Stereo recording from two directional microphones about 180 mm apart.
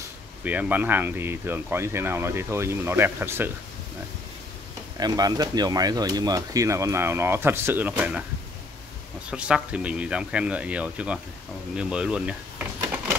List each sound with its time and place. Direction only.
0.4 s speech: 10° right (ahead or behind)
4.9 s speech: 20° right (ahead or behind)
9.3 s speech: 5° right (ahead or behind)